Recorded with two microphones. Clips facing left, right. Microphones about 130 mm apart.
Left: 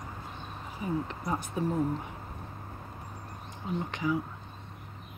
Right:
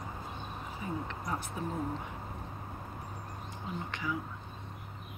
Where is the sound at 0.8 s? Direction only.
15° left (ahead or behind).